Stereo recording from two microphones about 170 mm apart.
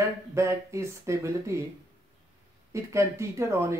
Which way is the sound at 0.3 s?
15° right (ahead or behind).